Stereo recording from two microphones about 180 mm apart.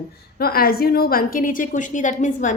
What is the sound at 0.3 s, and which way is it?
A woman's voice, 55° left (ahead or behind).